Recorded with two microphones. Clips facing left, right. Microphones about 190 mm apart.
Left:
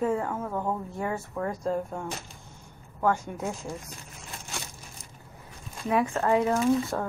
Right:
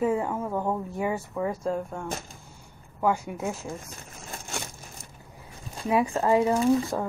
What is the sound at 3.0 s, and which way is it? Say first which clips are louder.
Speech: right 1 dB; 10° right (ahead or behind).